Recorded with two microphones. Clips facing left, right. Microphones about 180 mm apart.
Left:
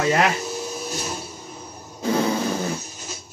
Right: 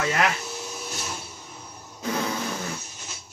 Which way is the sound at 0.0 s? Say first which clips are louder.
Left 5 dB; 35° left (ahead or behind).